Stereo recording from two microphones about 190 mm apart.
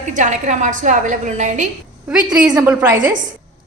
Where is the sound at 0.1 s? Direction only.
40° right (ahead or behind).